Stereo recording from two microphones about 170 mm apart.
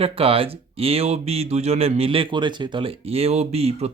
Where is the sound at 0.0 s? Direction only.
35° right (ahead or behind).